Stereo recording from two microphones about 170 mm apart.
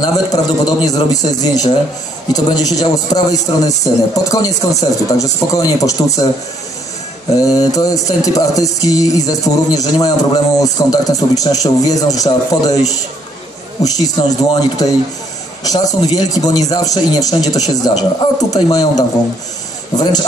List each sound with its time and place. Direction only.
0.0 s music: 25° left (ahead or behind)
7.4 s music: 20° left (ahead or behind)
13.8 s music: 20° left (ahead or behind)